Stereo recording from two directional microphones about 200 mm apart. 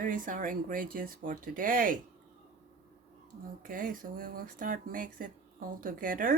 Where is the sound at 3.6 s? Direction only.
45° right (ahead or behind).